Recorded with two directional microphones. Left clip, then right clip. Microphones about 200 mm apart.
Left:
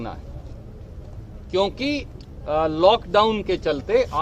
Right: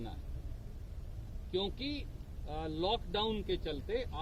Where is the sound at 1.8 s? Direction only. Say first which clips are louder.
Left 16 dB; centre (ahead or behind).